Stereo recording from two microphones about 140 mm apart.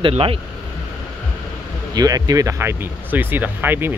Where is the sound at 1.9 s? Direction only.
25° right (ahead or behind).